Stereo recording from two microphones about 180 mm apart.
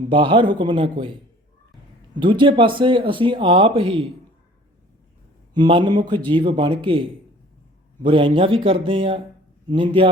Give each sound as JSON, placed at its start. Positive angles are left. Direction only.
{"t": 0.1, "sound": "speech", "side_deg": -30}
{"t": 2.1, "sound": "speech", "side_deg": -25}
{"t": 5.5, "sound": "speech", "side_deg": -25}
{"t": 8.0, "sound": "speech", "side_deg": -30}